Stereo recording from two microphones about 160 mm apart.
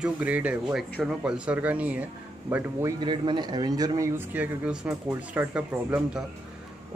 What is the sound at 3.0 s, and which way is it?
A man's voice, 30° right (ahead or behind).